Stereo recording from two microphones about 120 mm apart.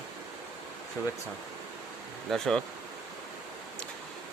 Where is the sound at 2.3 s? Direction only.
5° left (ahead or behind).